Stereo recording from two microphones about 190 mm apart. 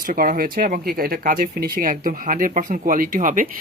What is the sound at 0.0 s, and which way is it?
Speech, 45° right (ahead or behind).